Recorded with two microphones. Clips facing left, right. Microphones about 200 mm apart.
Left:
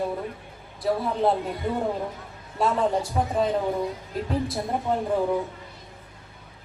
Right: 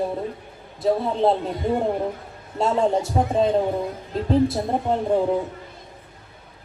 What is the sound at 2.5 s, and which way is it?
A man's voice, 25° right (ahead or behind).